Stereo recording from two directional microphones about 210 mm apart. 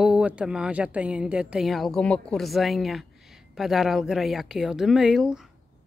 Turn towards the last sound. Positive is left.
turn(degrees=0)  # may be behind; listen again after turning